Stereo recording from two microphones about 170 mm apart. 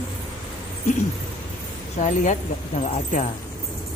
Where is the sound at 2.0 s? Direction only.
45° left (ahead or behind).